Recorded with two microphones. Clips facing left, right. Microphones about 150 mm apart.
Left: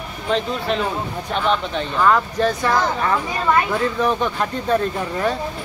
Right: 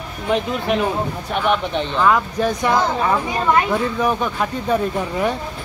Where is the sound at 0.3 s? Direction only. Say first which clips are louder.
Right 2 dB; 15° right (ahead or behind).